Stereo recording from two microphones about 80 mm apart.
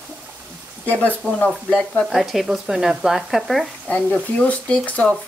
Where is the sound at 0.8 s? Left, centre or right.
Centre.